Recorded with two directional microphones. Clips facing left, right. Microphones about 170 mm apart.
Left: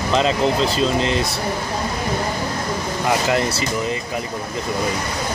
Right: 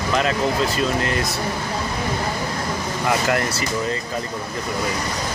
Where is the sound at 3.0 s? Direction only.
20° left (ahead or behind).